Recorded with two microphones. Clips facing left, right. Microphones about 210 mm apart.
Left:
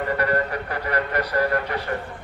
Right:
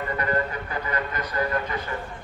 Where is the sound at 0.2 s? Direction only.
70° left (ahead or behind).